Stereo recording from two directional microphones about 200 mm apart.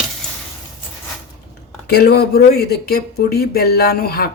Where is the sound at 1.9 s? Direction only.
55° left (ahead or behind).